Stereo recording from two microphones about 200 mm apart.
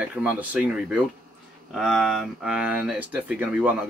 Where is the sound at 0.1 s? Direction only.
5° right (ahead or behind).